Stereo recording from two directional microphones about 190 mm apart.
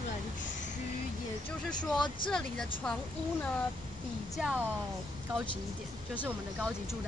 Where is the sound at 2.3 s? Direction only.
5° left (ahead or behind).